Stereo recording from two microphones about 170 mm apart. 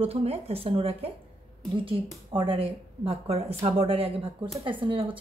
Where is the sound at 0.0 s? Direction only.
35° right (ahead or behind).